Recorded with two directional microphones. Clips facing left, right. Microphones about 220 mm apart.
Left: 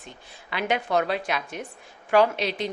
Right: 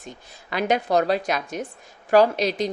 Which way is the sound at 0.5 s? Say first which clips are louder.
Right 4 dB; 40° right (ahead or behind).